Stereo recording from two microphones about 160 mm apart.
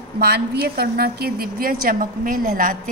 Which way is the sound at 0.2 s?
85° right.